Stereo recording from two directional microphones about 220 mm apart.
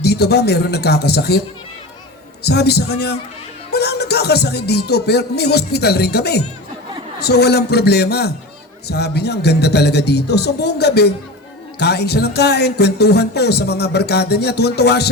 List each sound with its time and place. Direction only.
0.0 s music: 45° left (ahead or behind)
2.4 s music: 50° left (ahead or behind)